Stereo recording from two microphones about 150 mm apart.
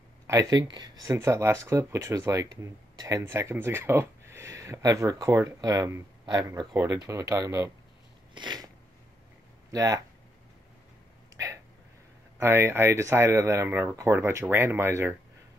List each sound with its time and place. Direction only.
0.3 s speech: 25° right (ahead or behind)
6.7 s speech: 15° right (ahead or behind)
8.4 s a sound: 30° right (ahead or behind)
9.7 s speech: 25° right (ahead or behind)
11.3 s a sound: 20° right (ahead or behind)
12.4 s speech: 15° right (ahead or behind)